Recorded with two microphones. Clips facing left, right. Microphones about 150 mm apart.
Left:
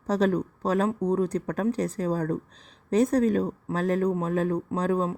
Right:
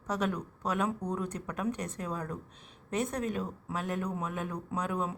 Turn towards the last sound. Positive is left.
turn(degrees=30)  # may be behind; listen again after turning